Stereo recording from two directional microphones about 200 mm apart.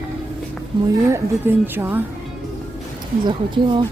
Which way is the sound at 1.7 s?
10° right (ahead or behind).